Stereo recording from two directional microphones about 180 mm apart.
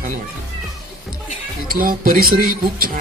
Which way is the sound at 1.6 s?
50° right (ahead or behind).